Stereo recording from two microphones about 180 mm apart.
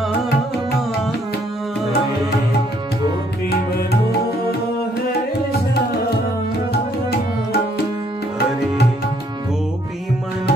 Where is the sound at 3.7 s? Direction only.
60° left (ahead or behind).